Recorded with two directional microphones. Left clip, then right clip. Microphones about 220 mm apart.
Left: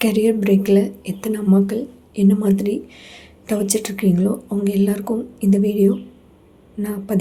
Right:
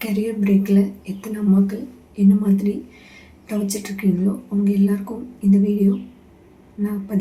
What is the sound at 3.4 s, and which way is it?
Speech, 50° left (ahead or behind).